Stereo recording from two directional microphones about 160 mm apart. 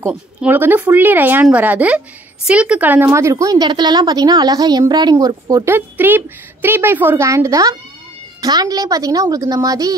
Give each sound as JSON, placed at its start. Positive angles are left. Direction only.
{"t": 0.0, "sound": "speech", "side_deg": -10}